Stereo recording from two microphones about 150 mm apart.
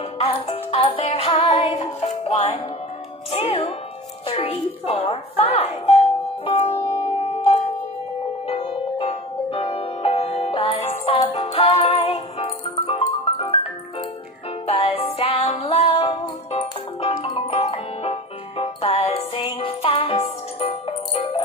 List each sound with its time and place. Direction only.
0.2 s music: 40° left (ahead or behind)
4.3 s doorbell: 40° left (ahead or behind)
8.5 s music: 40° left (ahead or behind)
14.7 s music: 40° left (ahead or behind)